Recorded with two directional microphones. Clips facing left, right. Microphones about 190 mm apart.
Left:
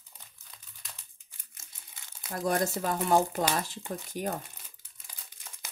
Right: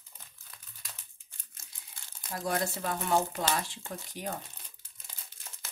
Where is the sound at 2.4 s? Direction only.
45° left (ahead or behind).